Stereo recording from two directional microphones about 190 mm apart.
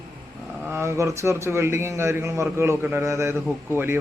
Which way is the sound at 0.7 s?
15° right (ahead or behind).